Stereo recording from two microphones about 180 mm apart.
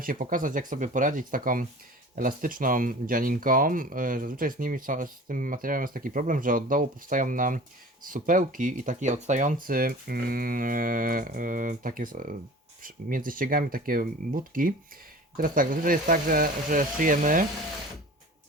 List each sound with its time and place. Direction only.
0.0 s speech: 50° right (ahead or behind)